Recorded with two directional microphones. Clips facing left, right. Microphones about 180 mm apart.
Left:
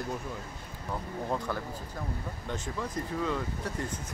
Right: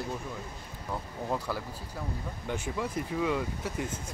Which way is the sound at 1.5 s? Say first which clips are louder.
Left 1 dB; 10° right (ahead or behind).